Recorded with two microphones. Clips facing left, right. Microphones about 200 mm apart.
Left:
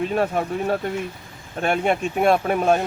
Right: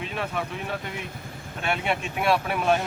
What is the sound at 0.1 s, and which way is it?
Speech, 45° left (ahead or behind).